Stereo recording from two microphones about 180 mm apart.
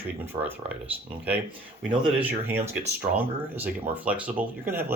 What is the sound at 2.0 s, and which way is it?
Speech, 10° right (ahead or behind).